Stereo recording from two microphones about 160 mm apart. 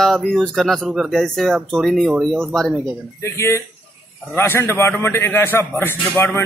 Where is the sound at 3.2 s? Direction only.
15° left (ahead or behind).